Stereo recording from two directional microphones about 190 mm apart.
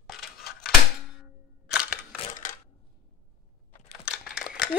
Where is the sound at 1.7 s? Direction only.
5° right (ahead or behind).